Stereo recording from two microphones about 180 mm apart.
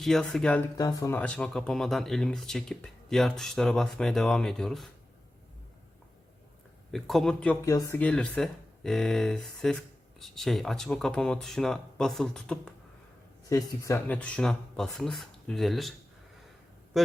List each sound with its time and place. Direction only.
0.0 s speech: centre (ahead or behind)
0.8 s speech: 20° left (ahead or behind)
1.2 s speech: 5° left (ahead or behind)
6.9 s speech: centre (ahead or behind)
7.6 s speech: 20° left (ahead or behind)
7.9 s speech: 5° left (ahead or behind)
13.5 s speech: 15° left (ahead or behind); by 15.9 s centre (ahead or behind)